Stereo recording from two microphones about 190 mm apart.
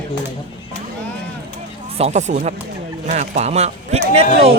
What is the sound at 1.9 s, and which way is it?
A man's voice, 35° right (ahead or behind).